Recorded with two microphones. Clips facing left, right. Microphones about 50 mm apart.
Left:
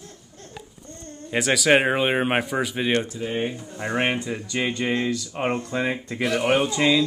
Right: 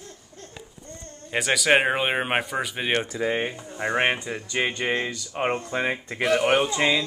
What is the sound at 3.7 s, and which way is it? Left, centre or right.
Speech, centre.